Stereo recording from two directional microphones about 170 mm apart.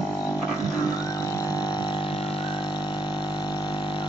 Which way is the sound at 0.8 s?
20° left (ahead or behind).